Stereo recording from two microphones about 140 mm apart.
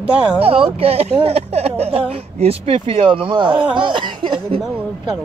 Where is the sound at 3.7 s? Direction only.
35° right (ahead or behind).